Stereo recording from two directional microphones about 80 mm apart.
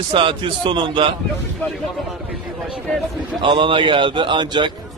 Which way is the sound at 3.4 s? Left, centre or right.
Right.